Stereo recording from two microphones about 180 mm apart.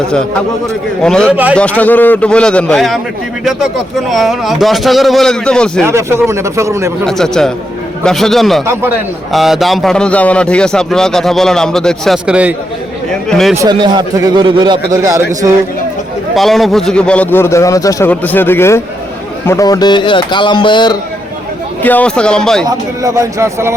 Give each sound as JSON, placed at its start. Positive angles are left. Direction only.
{"t": 1.0, "sound": "a man's voice", "side_deg": 5}
{"t": 4.1, "sound": "a man's voice", "side_deg": 0}
{"t": 5.8, "sound": "speech", "side_deg": -15}
{"t": 7.0, "sound": "a man's voice", "side_deg": 5}
{"t": 13.6, "sound": "a man's voice", "side_deg": -25}
{"t": 16.3, "sound": "a man's voice", "side_deg": 0}
{"t": 21.8, "sound": "a man's voice", "side_deg": 10}
{"t": 22.6, "sound": "speech", "side_deg": -20}